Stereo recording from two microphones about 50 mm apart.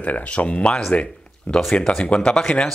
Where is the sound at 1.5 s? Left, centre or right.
Centre.